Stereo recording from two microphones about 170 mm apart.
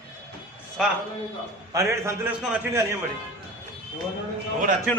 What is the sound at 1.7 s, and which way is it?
A man's voice, 15° right (ahead or behind).